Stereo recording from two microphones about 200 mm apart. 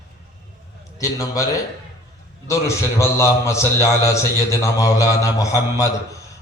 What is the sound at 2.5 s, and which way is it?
A man's voice, 15° left (ahead or behind).